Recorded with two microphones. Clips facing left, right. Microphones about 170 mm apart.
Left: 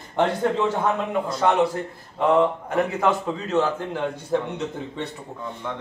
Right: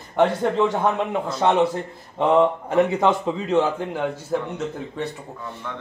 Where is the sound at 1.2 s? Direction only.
25° right (ahead or behind).